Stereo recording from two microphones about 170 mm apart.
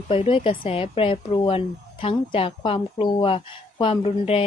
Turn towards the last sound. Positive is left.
turn(degrees=35)  # may be behind; listen again after turning